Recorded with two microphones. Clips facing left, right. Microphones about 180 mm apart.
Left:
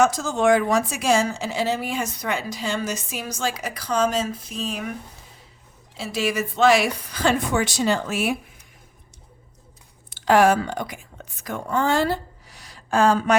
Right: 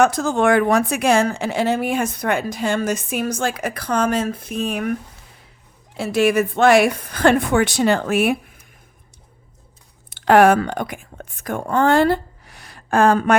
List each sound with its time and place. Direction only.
0.0 s a woman's voice: 60° right (ahead or behind)
6.0 s a woman's voice: 55° right (ahead or behind)
10.1 s speech: 60° right (ahead or behind)